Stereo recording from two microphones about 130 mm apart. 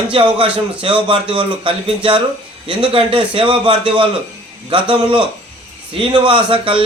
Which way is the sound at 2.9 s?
45° right (ahead or behind).